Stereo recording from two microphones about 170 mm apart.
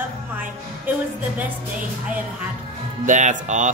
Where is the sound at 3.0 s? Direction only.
45° right (ahead or behind).